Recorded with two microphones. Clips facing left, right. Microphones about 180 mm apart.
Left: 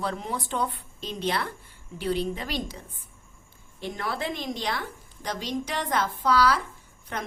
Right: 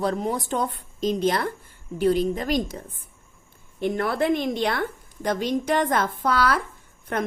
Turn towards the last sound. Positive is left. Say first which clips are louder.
# right 8 dB
turn(degrees=-55)  # may be behind; listen again after turning